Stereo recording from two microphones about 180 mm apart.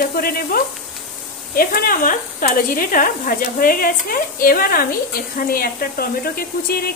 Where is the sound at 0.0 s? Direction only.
55° left (ahead or behind).